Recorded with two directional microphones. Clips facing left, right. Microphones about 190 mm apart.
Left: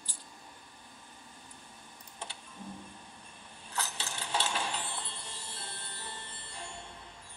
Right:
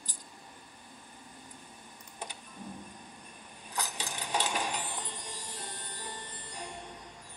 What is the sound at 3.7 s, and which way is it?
Coin, 15° right (ahead or behind).